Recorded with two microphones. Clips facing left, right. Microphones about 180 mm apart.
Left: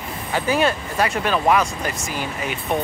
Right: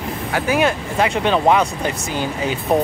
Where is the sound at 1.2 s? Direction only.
25° right (ahead or behind).